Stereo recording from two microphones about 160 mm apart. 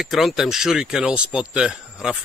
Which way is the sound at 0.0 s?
Centre (ahead or behind).